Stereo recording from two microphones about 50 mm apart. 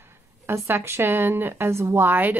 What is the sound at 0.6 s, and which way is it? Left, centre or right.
Speech, right.